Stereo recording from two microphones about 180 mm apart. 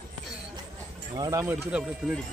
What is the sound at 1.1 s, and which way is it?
Speech, 20° right (ahead or behind).